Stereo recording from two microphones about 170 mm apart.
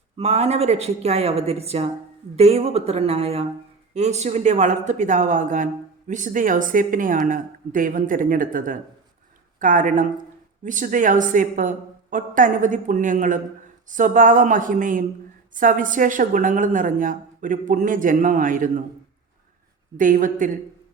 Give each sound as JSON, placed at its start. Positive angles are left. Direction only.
{"t": 0.2, "sound": "a woman's voice", "side_deg": -40}
{"t": 20.0, "sound": "a woman's voice", "side_deg": -50}